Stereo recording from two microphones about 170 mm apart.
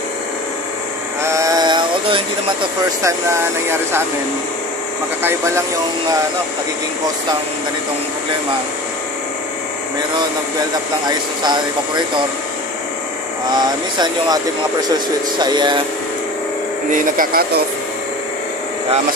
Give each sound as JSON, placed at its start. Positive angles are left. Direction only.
{"t": 1.2, "sound": "a sound", "side_deg": -20}
{"t": 3.0, "sound": "speech", "side_deg": -15}
{"t": 5.2, "sound": "speech", "side_deg": -15}
{"t": 11.1, "sound": "speech", "side_deg": -25}
{"t": 13.5, "sound": "speech", "side_deg": -25}
{"t": 16.9, "sound": "speech", "side_deg": -55}